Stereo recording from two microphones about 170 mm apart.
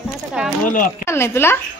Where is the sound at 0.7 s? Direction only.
55° left (ahead or behind).